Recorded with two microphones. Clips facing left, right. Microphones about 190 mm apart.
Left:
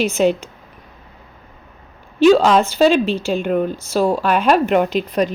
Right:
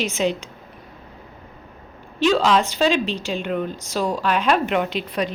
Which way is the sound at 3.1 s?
10° left (ahead or behind).